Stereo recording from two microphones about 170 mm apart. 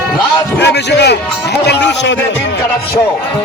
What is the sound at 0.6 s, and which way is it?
A man's voice, 85° left.